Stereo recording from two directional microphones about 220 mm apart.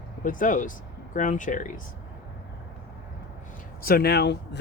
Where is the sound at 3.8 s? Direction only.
40° left (ahead or behind).